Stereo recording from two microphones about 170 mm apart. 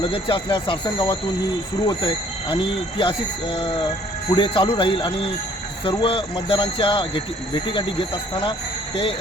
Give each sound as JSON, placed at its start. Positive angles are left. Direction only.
{"t": 0.0, "sound": "speech", "side_deg": 30}